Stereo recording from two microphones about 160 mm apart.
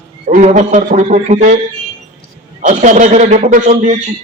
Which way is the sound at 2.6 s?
50° right (ahead or behind).